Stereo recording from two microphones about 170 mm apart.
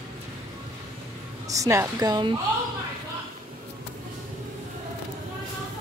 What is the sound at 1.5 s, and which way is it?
Speech, 20° right (ahead or behind).